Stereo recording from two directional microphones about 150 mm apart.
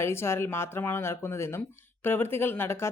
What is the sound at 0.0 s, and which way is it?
Speech, 15° left (ahead or behind).